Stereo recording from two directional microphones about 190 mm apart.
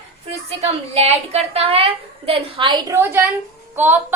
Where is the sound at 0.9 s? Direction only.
35° right (ahead or behind).